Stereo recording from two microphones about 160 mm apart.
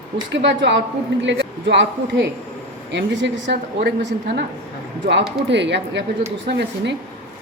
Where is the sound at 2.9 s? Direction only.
90° right.